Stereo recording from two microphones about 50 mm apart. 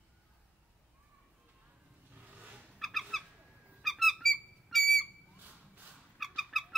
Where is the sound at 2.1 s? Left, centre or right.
Right.